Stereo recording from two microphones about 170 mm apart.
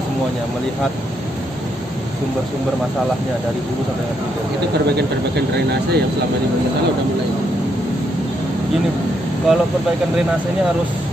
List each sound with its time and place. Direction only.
5.7 s speech: 70° right (ahead or behind)
9.5 s speech: 5° right (ahead or behind)